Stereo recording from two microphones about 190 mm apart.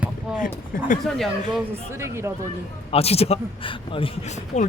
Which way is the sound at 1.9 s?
15° right (ahead or behind).